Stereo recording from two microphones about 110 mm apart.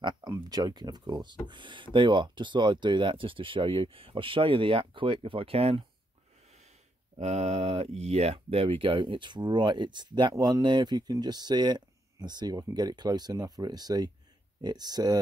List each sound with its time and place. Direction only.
0.3 s speech: 35° right (ahead or behind); by 5.9 s 65° right (ahead or behind)
7.2 s speech: 90° right; by 15.1 s 40° right (ahead or behind)